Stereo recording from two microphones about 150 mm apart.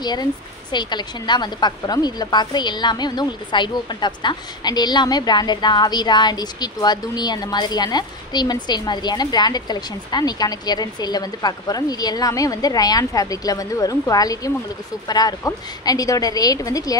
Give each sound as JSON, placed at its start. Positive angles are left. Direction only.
{"t": 0.0, "sound": "a woman's voice", "side_deg": 30}